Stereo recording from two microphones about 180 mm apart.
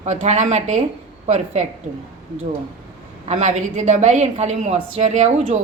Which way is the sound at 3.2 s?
40° right (ahead or behind).